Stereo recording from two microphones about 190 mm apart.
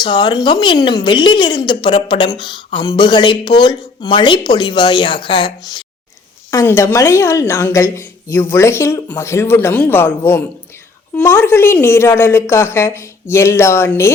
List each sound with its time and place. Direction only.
0.0 s speech: 25° left (ahead or behind)